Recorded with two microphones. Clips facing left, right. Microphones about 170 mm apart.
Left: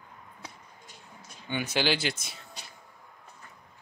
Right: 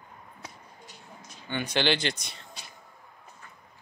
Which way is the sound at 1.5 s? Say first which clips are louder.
Right 1 dB; 5° left (ahead or behind).